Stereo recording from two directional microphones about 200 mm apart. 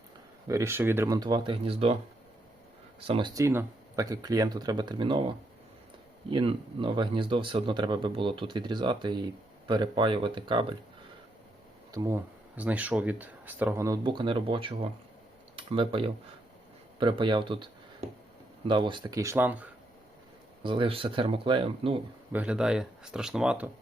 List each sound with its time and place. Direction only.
0.4 s speech: 15° right (ahead or behind)
3.0 s speech: 25° right (ahead or behind)
6.3 s speech: 25° right (ahead or behind)
11.9 s speech: 15° right (ahead or behind)
18.7 s speech: 25° right (ahead or behind); by 19.7 s 10° right (ahead or behind)
20.7 s speech: 25° right (ahead or behind)
22.3 s speech: 5° right (ahead or behind)